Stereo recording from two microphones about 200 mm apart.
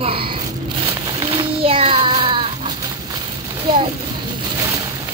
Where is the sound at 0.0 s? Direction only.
25° right (ahead or behind).